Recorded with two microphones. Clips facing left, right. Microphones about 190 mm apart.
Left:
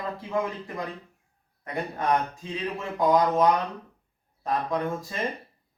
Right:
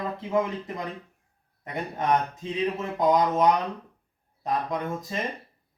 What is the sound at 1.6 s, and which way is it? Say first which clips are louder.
Speech: even; 20° right (ahead or behind).